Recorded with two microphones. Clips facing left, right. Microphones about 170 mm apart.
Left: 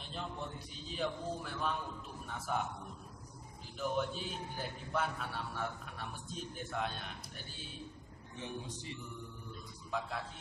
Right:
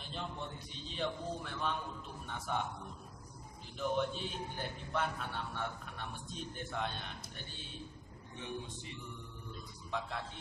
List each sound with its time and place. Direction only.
0.0 s a man's voice: centre (ahead or behind)
3.7 s a man's voice: 5° left (ahead or behind)
9.8 s a man's voice: 5° left (ahead or behind)